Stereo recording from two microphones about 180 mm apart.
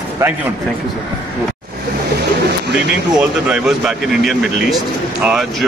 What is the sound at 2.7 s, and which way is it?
Speech, 70° right (ahead or behind).